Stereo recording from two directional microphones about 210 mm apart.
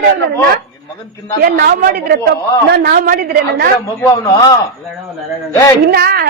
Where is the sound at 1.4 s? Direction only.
50° right (ahead or behind).